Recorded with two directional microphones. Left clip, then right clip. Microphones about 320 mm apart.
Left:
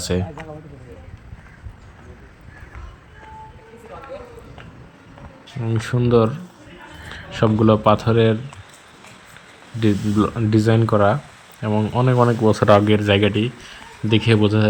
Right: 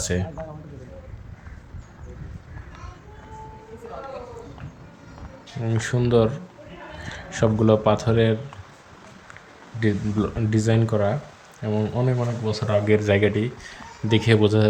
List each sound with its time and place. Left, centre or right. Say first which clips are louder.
0.0 s a man's voice: left 3 dB; centre
5.6 s speech: left 2 dB; centre
9.8 s speech: left 5 dB; centre
12.2 s speech: left 11 dB; centre
12.9 s speech: left 2 dB; centre